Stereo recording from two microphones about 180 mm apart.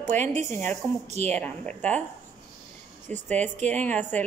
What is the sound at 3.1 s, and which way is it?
Speech, 5° left (ahead or behind).